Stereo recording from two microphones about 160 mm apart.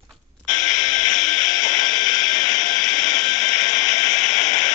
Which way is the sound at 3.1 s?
45° left (ahead or behind).